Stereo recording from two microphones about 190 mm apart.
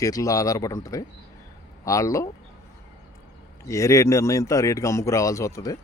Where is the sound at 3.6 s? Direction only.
15° left (ahead or behind).